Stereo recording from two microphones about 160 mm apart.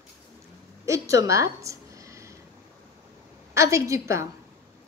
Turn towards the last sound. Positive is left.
turn(degrees=-20)  # may be behind; listen again after turning